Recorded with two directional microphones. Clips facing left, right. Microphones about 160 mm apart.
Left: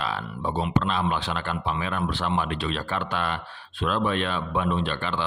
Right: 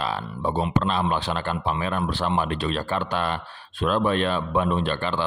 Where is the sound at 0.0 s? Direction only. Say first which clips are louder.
Right 2 dB; 40° right (ahead or behind).